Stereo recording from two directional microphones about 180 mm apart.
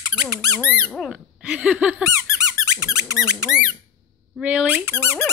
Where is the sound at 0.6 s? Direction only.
5° left (ahead or behind).